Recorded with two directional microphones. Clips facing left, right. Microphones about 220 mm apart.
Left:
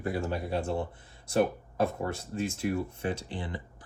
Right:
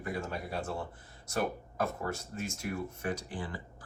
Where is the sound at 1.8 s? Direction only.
30° left (ahead or behind).